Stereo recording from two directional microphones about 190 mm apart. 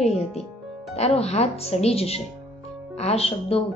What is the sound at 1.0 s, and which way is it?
A woman's voice, 35° left (ahead or behind).